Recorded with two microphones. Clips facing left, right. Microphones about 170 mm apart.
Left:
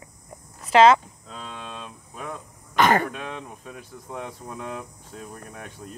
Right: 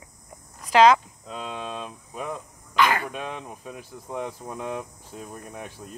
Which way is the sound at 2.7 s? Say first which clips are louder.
Left 3 dB; 50° left (ahead or behind).